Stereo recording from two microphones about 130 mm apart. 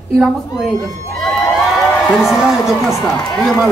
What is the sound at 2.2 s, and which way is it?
Speech, centre (ahead or behind).